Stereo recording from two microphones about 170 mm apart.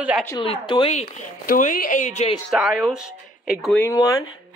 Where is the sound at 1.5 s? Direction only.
55° left (ahead or behind).